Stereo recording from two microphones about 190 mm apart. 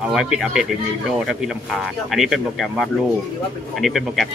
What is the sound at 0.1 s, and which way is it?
Speech, centre (ahead or behind).